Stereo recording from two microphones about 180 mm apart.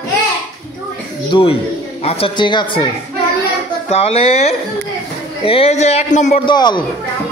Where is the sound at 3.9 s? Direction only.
35° left (ahead or behind).